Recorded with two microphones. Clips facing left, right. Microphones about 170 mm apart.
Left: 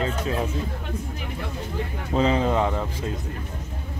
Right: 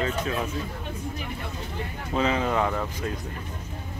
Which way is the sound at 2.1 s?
30° left (ahead or behind).